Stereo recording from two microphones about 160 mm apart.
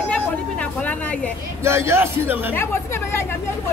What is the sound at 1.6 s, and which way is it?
Speech, 15° right (ahead or behind).